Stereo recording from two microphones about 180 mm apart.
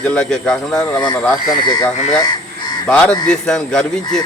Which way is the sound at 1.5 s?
25° left (ahead or behind).